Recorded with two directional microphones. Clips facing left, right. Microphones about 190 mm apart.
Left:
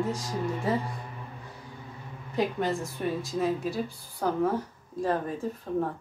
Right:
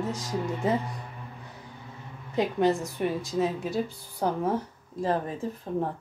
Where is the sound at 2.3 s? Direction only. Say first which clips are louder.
Right 3 dB; 20° right (ahead or behind).